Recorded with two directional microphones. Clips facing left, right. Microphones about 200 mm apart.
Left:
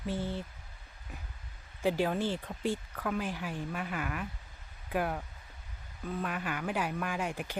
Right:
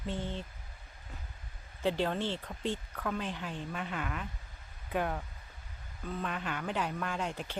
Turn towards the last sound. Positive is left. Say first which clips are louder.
# left 1 dB
turn(degrees=10)  # may be behind; listen again after turning